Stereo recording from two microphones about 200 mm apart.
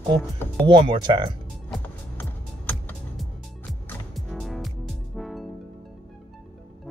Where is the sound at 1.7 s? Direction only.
10° left (ahead or behind).